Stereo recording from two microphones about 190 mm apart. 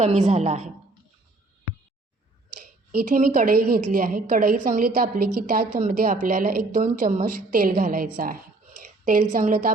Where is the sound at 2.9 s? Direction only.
45° right (ahead or behind).